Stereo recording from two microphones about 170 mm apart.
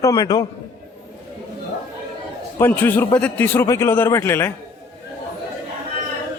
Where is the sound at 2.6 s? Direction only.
10° left (ahead or behind).